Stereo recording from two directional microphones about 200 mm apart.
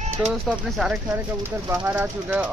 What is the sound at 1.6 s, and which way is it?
Speech, 10° right (ahead or behind).